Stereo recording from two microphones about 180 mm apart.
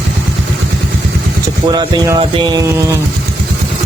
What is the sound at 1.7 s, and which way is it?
Speech, 20° right (ahead or behind).